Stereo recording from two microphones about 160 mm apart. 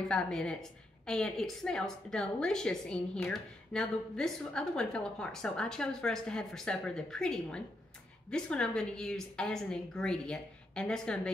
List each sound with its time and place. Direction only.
0.1 s a woman's voice: 5° left (ahead or behind)